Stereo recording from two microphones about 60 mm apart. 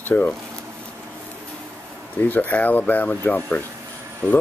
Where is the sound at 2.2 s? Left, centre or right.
Left.